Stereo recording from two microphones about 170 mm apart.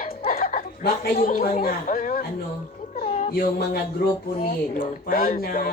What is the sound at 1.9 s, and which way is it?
Speech, 50° left (ahead or behind).